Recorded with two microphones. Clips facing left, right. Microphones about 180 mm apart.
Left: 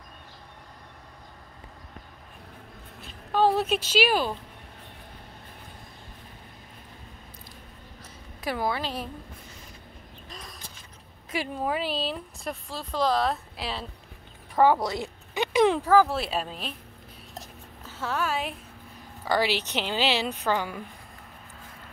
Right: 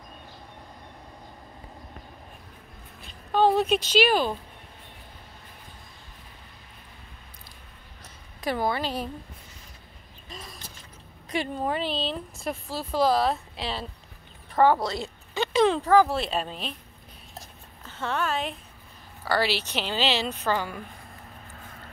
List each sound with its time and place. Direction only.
3.1 s a sound: 5° left (ahead or behind)
8.5 s speech: centre (ahead or behind)
11.2 s speech: 5° left (ahead or behind)
17.8 s a woman's voice: 5° left (ahead or behind)